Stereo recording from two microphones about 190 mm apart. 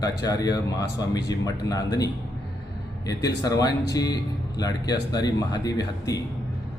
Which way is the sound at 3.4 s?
20° left (ahead or behind).